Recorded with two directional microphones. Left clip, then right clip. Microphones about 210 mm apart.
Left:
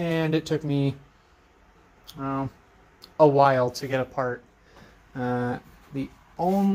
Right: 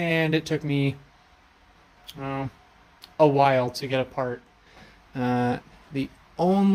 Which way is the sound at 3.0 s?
10° right (ahead or behind).